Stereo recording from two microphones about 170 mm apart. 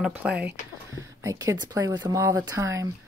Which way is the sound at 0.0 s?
5° right (ahead or behind).